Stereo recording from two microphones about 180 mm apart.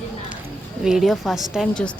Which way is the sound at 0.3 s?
5° right (ahead or behind).